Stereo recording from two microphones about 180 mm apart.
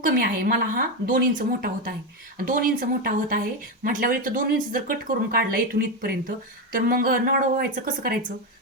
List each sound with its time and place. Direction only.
0.0 s speech: 55° right (ahead or behind)